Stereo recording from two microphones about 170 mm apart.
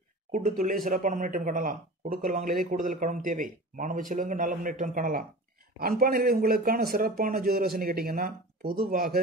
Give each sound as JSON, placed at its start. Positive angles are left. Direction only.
{"t": 0.3, "sound": "speech", "side_deg": -50}